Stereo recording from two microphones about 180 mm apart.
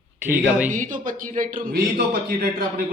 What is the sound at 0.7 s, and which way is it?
Speech, 45° right (ahead or behind).